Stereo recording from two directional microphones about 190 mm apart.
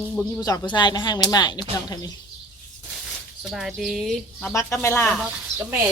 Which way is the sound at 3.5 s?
Centre (ahead or behind).